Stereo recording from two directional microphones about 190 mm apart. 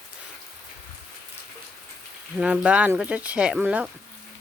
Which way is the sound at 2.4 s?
5° right (ahead or behind).